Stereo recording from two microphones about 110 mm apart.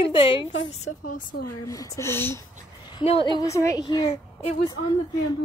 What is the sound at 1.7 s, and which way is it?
Speech, 30° left (ahead or behind).